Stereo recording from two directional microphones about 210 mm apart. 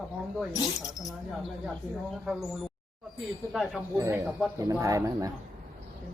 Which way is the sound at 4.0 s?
15° right (ahead or behind).